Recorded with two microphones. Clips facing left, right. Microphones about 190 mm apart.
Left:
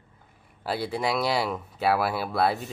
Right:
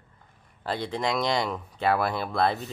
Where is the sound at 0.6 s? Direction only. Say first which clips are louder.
Left 1 dB; 5° left (ahead or behind).